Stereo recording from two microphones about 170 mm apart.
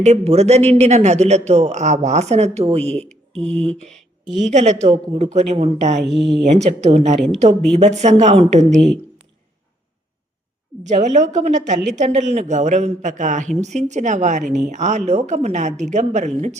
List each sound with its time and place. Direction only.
0.0 s a man's voice: 40° right (ahead or behind)
10.8 s speech: 45° right (ahead or behind)